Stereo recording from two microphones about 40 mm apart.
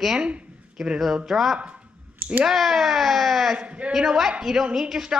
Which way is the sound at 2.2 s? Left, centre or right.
Right.